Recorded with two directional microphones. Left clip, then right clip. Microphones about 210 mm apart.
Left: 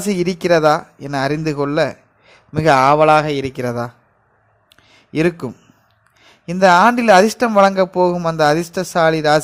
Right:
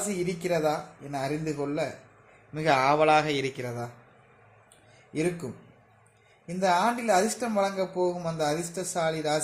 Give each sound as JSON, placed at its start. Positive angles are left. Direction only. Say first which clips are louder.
{"t": 0.1, "sound": "speech", "louder": "left 15 dB", "side_deg": 40}
{"t": 5.1, "sound": "speech", "louder": "left 12 dB", "side_deg": 35}
{"t": 6.5, "sound": "speech", "louder": "left 14 dB", "side_deg": 35}